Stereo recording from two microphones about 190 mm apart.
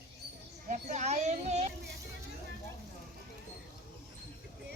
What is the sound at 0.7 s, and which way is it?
A child's voice, 40° right (ahead or behind).